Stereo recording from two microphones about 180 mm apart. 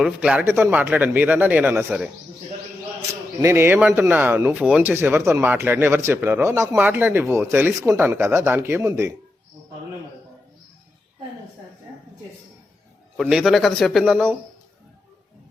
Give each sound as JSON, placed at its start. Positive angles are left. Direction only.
{"t": 0.0, "sound": "speech", "side_deg": -5}
{"t": 3.4, "sound": "speech", "side_deg": -15}
{"t": 13.1, "sound": "a man's voice", "side_deg": 0}